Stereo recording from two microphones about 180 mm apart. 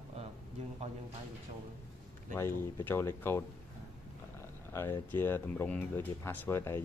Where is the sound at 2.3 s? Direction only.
15° left (ahead or behind).